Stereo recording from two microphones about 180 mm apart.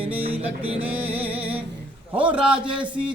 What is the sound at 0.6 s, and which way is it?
Music, 35° right (ahead or behind).